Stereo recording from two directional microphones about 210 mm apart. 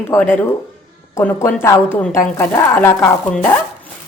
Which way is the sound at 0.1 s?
10° left (ahead or behind).